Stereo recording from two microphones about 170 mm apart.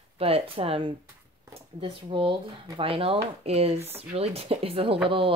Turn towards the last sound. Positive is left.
turn(degrees=-30)  # may be behind; listen again after turning